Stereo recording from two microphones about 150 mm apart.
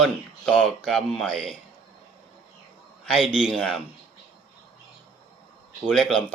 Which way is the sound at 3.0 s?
5° left (ahead or behind).